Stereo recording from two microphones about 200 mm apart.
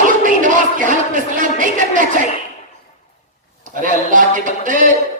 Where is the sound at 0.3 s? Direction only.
40° right (ahead or behind).